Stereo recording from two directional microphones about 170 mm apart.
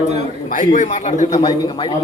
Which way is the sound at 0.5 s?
50° left (ahead or behind).